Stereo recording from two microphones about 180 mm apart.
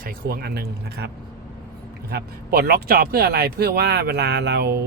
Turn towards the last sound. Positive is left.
turn(degrees=-65)  # may be behind; listen again after turning